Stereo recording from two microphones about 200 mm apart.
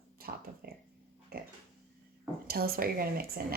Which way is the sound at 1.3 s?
50° right (ahead or behind).